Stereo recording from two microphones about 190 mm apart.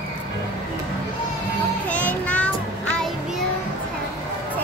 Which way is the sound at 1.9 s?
5° left (ahead or behind).